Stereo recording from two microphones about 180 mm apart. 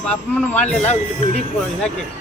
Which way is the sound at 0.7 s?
40° left (ahead or behind).